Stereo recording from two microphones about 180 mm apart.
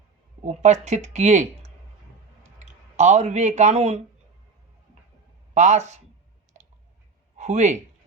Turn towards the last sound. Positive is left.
turn(degrees=-40)  # may be behind; listen again after turning